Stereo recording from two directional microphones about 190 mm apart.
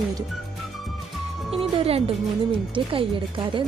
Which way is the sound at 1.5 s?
30° right (ahead or behind).